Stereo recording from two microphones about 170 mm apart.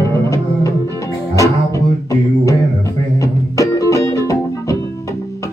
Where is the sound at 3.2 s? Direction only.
20° left (ahead or behind).